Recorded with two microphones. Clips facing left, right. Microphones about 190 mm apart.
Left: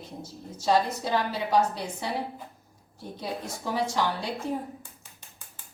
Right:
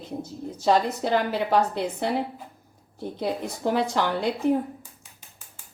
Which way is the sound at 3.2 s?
60° right (ahead or behind).